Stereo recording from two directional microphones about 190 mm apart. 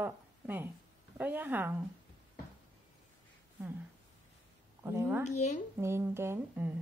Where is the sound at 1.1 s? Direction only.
10° right (ahead or behind).